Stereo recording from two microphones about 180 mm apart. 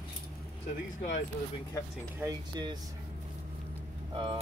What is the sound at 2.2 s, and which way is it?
Speech, 20° right (ahead or behind).